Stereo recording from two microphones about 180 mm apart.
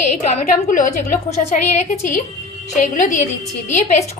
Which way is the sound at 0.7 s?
45° left (ahead or behind).